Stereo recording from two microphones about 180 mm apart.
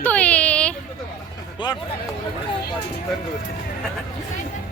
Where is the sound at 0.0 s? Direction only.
5° left (ahead or behind).